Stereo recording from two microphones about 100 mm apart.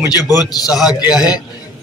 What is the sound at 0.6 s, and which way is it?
Speech, 5° right (ahead or behind).